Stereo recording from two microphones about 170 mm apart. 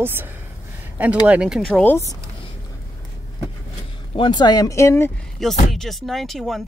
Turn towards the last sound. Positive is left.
turn(degrees=0)  # may be behind; listen again after turning